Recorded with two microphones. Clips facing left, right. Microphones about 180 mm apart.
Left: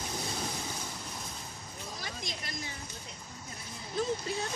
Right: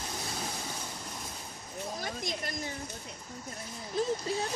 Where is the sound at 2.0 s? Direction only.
50° right (ahead or behind).